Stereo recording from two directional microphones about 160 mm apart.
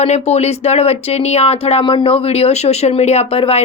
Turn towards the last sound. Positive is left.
turn(degrees=40)  # may be behind; listen again after turning